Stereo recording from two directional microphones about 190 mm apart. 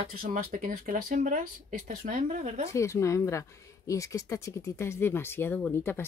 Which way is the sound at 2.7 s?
15° left (ahead or behind).